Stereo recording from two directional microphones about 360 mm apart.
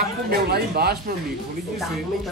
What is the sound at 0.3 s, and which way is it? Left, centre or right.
Speech, right.